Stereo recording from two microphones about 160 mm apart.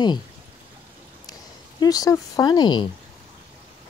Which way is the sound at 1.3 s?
25° left (ahead or behind).